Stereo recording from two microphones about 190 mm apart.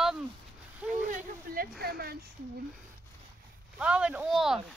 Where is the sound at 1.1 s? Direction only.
45° right (ahead or behind).